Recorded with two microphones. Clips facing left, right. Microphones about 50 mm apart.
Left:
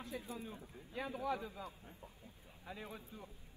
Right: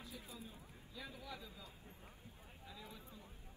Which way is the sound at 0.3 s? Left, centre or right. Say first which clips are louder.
Left 7 dB; left.